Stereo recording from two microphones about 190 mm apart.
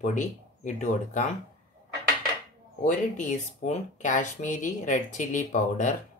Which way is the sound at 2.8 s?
45° left (ahead or behind).